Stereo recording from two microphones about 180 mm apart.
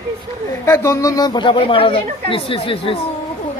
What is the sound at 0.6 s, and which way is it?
A woman's voice, 15° left (ahead or behind).